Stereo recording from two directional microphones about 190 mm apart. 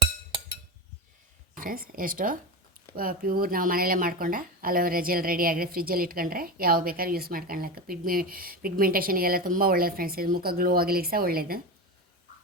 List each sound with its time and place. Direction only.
1.5 s speech: 50° right (ahead or behind)